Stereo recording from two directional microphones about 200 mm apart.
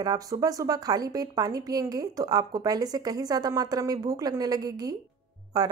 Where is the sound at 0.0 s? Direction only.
20° right (ahead or behind).